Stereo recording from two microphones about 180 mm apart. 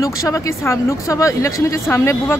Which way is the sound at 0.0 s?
20° left (ahead or behind).